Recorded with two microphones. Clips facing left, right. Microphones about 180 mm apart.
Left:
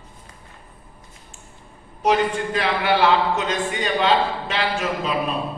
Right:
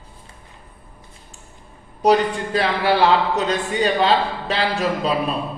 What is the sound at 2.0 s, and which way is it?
A man's voice, 35° right (ahead or behind).